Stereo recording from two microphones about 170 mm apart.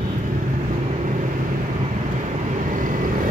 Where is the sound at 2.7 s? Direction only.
55° right (ahead or behind).